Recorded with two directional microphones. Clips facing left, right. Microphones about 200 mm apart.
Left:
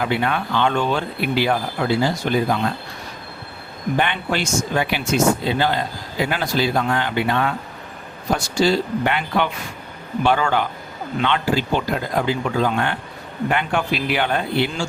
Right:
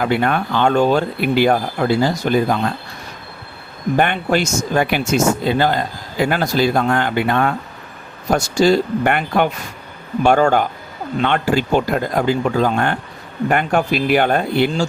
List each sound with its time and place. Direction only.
0.0 s speech: 50° right (ahead or behind)
3.9 s speech: 45° right (ahead or behind)